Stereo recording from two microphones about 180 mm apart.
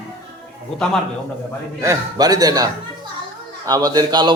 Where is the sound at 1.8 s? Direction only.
20° right (ahead or behind).